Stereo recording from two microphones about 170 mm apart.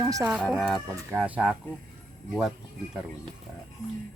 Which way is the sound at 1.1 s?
10° right (ahead or behind).